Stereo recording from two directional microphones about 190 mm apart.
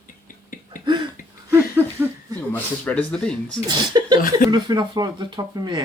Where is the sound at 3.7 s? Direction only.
20° right (ahead or behind).